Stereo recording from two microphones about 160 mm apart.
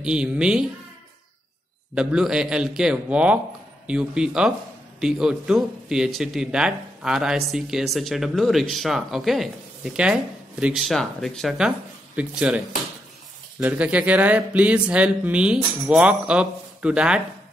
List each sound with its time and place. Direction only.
0.0 s speech: 5° right (ahead or behind)
2.0 s speech: 5° right (ahead or behind)